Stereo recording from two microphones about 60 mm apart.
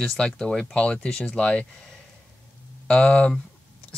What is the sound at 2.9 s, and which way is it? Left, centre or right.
Speech, centre.